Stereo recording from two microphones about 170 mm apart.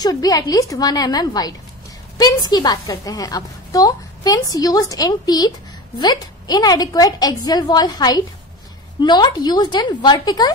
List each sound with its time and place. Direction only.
0.0 s a woman's voice: 20° left (ahead or behind)